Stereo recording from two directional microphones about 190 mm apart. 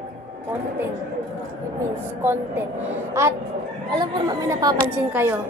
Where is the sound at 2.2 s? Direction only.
10° right (ahead or behind).